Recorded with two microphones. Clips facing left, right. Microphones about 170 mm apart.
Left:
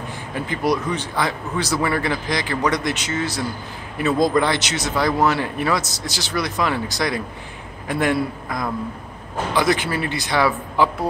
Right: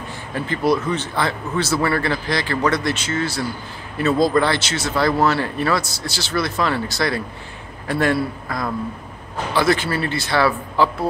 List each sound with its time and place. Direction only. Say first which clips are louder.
0.3 s a man's voice: right 2 dB; 15° left (ahead or behind)